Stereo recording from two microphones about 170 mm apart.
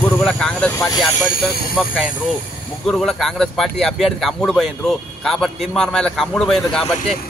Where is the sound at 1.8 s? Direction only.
Centre (ahead or behind).